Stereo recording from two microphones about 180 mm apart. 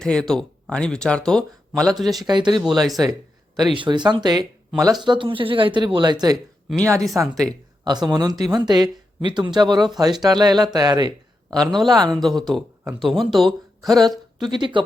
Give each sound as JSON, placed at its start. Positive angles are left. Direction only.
{"t": 0.0, "sound": "speech", "side_deg": 5}
{"t": 2.2, "sound": "speech", "side_deg": -25}
{"t": 2.6, "sound": "speech", "side_deg": 0}
{"t": 3.0, "sound": "a sound", "side_deg": -20}
{"t": 3.8, "sound": "speech", "side_deg": -25}
{"t": 11.5, "sound": "speech", "side_deg": 0}
{"t": 14.5, "sound": "speech", "side_deg": -25}